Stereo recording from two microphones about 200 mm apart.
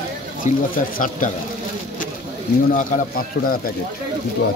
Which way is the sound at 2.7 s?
45° left (ahead or behind).